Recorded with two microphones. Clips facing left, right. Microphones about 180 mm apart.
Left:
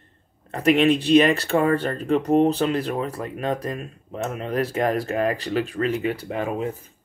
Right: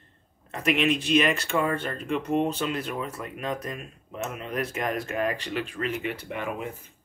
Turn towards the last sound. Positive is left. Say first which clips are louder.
# left 6 dB
turn(degrees=35)  # may be behind; listen again after turning